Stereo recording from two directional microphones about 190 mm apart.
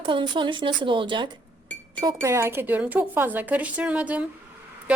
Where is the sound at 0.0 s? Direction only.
25° right (ahead or behind).